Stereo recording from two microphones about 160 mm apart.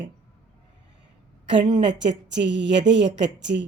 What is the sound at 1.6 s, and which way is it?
Speech, 30° right (ahead or behind).